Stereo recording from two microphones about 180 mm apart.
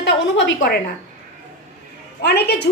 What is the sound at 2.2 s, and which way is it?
Speech, 65° left (ahead or behind).